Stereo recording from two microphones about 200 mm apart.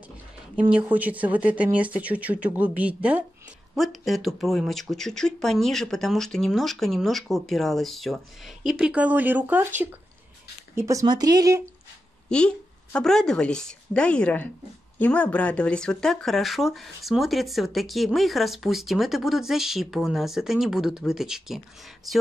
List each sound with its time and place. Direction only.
0.6 s speech: 5° right (ahead or behind)
12.3 s speech: 5° left (ahead or behind)